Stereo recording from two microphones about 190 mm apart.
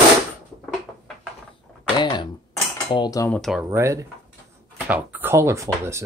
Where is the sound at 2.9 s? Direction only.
20° left (ahead or behind).